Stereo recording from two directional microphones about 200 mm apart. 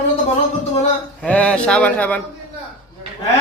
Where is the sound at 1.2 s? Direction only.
5° left (ahead or behind).